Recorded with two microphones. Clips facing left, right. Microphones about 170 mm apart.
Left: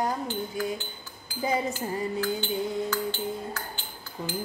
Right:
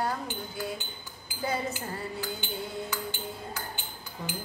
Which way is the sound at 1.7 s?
15° right (ahead or behind).